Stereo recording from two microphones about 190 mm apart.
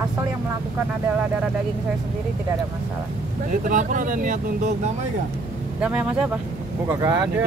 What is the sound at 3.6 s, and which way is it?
Speech, 45° right (ahead or behind).